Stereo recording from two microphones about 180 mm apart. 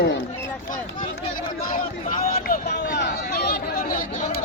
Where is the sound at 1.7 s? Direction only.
50° left (ahead or behind).